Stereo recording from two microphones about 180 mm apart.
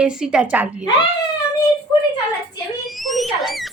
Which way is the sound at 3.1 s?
Centre (ahead or behind).